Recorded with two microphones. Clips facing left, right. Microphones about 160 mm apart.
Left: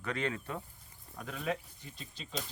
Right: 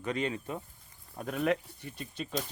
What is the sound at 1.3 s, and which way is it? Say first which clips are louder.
Speech: right 7 dB; 65° right (ahead or behind).